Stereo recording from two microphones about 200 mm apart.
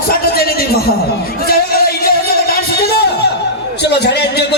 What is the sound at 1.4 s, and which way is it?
Music, 50° left (ahead or behind).